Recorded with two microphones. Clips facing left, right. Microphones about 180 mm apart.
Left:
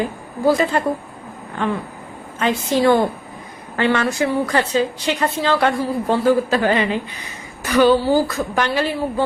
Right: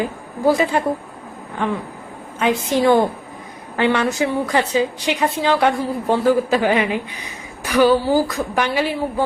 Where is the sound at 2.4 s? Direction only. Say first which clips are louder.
Even; 15° right (ahead or behind).